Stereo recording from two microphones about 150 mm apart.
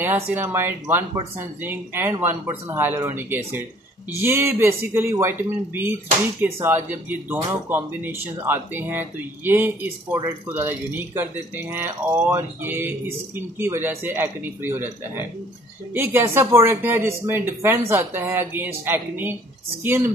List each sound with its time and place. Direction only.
0.0 s speech: 15° right (ahead or behind)